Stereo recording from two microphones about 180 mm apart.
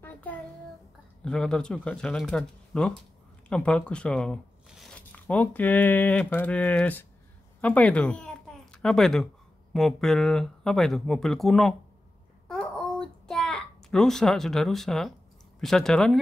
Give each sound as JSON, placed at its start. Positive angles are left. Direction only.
{"t": 0.0, "sound": "child singing", "side_deg": 10}
{"t": 1.2, "sound": "speech", "side_deg": 5}
{"t": 12.4, "sound": "a sound", "side_deg": 5}
{"t": 15.6, "sound": "speech", "side_deg": 0}